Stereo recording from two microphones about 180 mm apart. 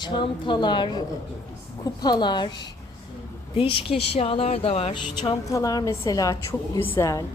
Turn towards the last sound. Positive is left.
turn(degrees=15)  # may be behind; listen again after turning